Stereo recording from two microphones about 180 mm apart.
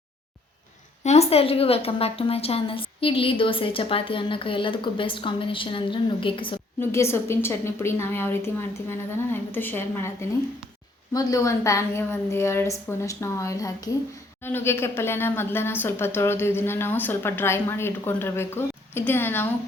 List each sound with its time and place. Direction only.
1.0 s a woman's voice: 35° left (ahead or behind)
6.7 s speech: 15° left (ahead or behind)